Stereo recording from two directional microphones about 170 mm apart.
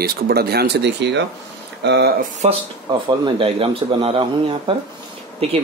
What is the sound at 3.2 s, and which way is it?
Speech, 30° right (ahead or behind).